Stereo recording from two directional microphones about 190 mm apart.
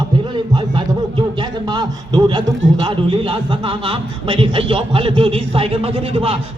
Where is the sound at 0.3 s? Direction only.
25° right (ahead or behind).